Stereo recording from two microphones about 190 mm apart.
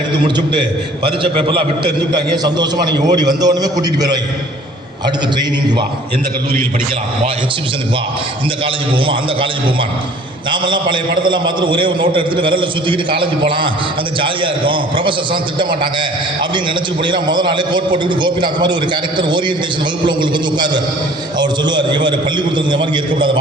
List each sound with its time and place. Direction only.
1.2 s a man's voice: 25° right (ahead or behind)
8.6 s a man's voice: 25° right (ahead or behind)
10.5 s a man's voice: 25° right (ahead or behind)
21.3 s a man's voice: 20° right (ahead or behind)